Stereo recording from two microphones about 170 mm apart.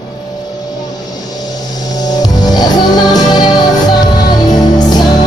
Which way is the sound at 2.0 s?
25° left (ahead or behind).